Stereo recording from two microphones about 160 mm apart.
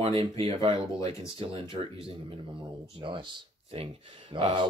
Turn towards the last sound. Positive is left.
turn(degrees=-35)  # may be behind; listen again after turning